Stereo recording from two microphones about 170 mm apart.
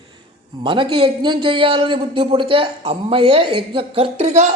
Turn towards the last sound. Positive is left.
turn(degrees=-40)  # may be behind; listen again after turning